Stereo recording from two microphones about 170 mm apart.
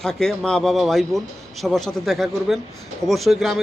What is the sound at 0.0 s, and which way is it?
A man's voice, 5° left (ahead or behind).